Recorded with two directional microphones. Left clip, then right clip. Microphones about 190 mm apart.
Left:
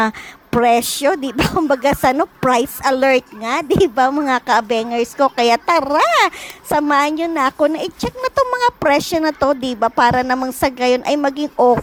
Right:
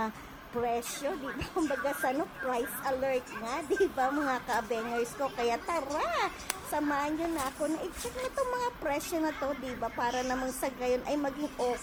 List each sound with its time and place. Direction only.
0.6 s speech: 40° left (ahead or behind)